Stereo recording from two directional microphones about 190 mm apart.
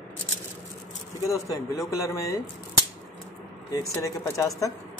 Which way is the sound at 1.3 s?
15° left (ahead or behind).